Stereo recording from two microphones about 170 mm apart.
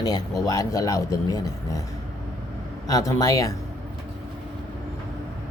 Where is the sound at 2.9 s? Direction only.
20° left (ahead or behind).